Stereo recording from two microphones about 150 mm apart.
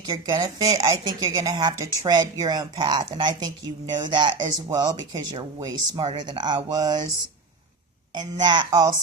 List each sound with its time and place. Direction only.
0.1 s a woman's voice: 30° right (ahead or behind)
8.1 s a woman's voice: 30° right (ahead or behind)